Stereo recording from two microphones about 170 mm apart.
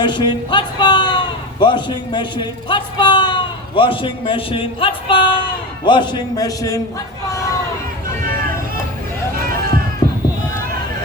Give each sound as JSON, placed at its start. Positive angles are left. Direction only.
{"t": 0.0, "sound": "a man's voice", "side_deg": 25}